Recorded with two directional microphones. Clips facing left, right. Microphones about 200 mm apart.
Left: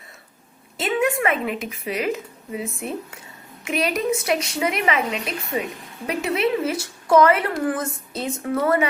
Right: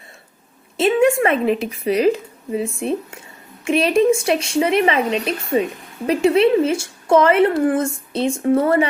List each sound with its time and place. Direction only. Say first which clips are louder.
0.8 s a woman's voice: right 7 dB; 25° right (ahead or behind)